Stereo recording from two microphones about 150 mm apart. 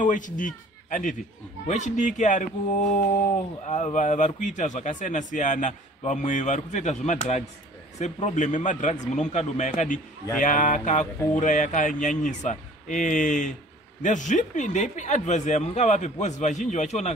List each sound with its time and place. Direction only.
0.0 s a man's voice: 60° left (ahead or behind)
3.6 s a man's voice: 50° left (ahead or behind)